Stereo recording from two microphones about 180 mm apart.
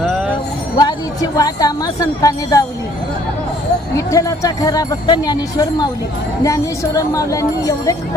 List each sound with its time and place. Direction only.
0.8 s a woman's voice: 20° left (ahead or behind)
3.9 s speech: 15° left (ahead or behind)